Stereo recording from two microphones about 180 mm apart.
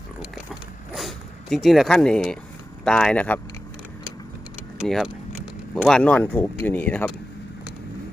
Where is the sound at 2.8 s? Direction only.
5° left (ahead or behind).